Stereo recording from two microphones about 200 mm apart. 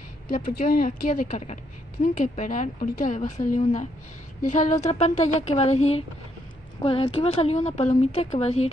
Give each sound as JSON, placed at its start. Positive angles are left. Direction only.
{"t": 0.3, "sound": "a woman's voice", "side_deg": 45}